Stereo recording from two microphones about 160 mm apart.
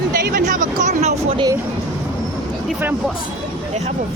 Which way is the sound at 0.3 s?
55° right (ahead or behind).